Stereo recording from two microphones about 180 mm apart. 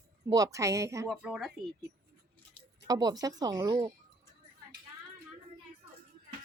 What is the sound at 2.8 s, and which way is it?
Speech, 20° right (ahead or behind).